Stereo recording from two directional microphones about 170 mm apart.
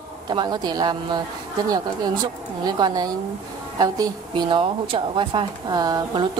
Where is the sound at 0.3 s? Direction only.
25° right (ahead or behind).